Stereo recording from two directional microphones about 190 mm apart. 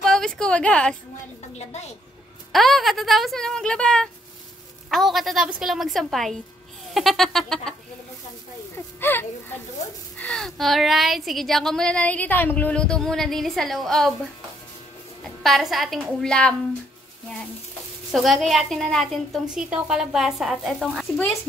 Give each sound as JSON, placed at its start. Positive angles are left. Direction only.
{"t": 0.0, "sound": "a sound", "side_deg": 5}
{"t": 1.6, "sound": "a woman's voice", "side_deg": 35}
{"t": 2.5, "sound": "a woman's voice", "side_deg": 0}
{"t": 8.7, "sound": "a woman's voice", "side_deg": 10}
{"t": 15.4, "sound": "a woman's voice", "side_deg": 0}
{"t": 18.1, "sound": "a woman's voice", "side_deg": 0}